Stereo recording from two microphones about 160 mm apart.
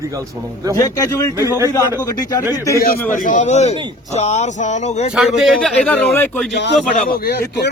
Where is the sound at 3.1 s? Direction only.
55° left (ahead or behind).